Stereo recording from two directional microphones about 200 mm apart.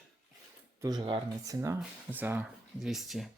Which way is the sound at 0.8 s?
20° right (ahead or behind).